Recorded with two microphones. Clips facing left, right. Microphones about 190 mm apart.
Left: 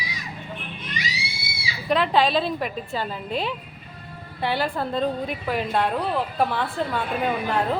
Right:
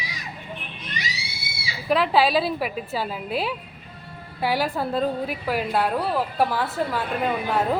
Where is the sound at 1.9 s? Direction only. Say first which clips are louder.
Right 1 dB; 5° right (ahead or behind).